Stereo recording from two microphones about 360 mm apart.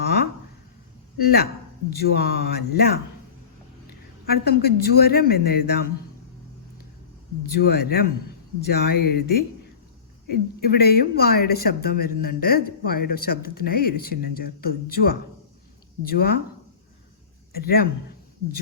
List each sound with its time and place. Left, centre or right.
1.2 s speech: left
4.3 s speech: left
7.5 s speech: left
17.5 s speech: left